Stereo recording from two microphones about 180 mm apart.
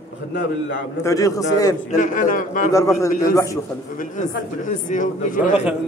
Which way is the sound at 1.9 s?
45° left (ahead or behind).